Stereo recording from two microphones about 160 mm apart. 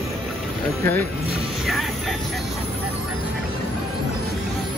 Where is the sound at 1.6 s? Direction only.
Centre (ahead or behind).